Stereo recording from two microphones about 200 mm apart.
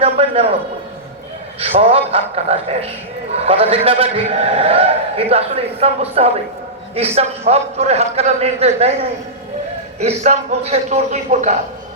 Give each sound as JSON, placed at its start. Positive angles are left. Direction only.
{"t": 0.0, "sound": "a man's voice", "side_deg": -30}
{"t": 1.5, "sound": "a man's voice", "side_deg": -30}